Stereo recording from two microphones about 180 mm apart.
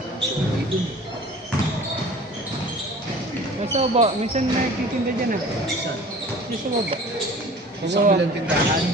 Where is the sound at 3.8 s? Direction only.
35° right (ahead or behind).